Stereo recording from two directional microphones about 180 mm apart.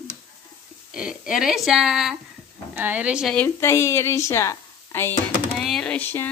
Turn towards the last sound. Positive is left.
turn(degrees=10)  # may be behind; listen again after turning